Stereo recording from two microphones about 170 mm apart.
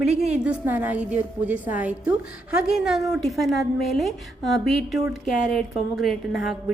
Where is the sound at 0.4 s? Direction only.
10° right (ahead or behind).